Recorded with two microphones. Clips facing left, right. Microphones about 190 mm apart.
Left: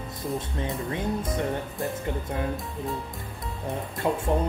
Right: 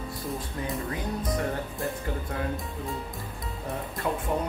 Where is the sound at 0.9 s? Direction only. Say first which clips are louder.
Left 2 dB; 25° left (ahead or behind).